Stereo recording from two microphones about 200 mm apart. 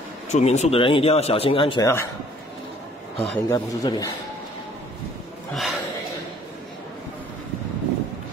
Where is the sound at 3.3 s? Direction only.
15° left (ahead or behind).